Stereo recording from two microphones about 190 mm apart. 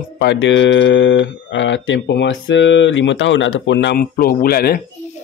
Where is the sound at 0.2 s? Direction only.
70° left (ahead or behind).